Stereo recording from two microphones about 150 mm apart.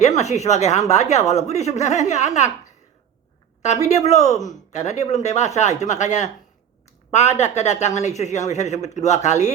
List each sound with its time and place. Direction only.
0.2 s speech: 50° left (ahead or behind)
3.6 s speech: 50° left (ahead or behind)